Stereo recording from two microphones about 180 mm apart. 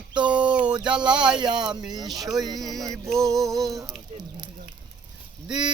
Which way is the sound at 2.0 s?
Centre (ahead or behind).